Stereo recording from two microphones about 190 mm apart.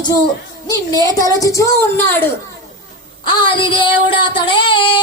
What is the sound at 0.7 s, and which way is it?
A child's voice, 20° left (ahead or behind).